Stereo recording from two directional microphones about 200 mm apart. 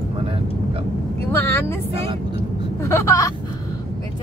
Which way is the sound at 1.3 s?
10° left (ahead or behind).